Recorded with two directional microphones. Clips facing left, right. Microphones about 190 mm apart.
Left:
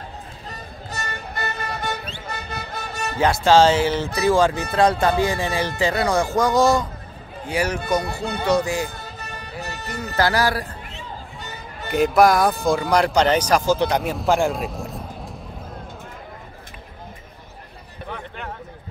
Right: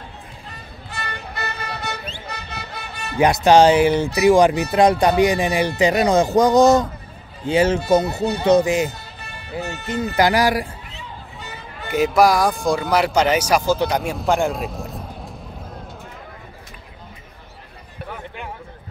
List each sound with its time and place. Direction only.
0.5 s music: 40° left (ahead or behind)
3.2 s speech: 20° right (ahead or behind)
8.9 s music: 45° left (ahead or behind)
10.1 s speech: 15° right (ahead or behind)
11.9 s speech: centre (ahead or behind)
18.1 s a sound: 10° right (ahead or behind)